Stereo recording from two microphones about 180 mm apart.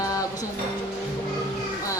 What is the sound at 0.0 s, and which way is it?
Music, 20° left (ahead or behind).